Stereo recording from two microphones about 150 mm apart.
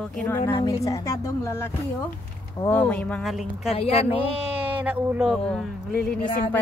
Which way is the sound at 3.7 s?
40° left (ahead or behind).